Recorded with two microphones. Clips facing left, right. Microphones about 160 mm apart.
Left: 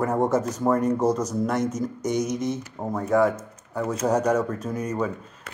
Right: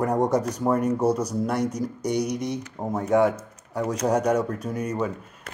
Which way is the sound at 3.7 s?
15° right (ahead or behind).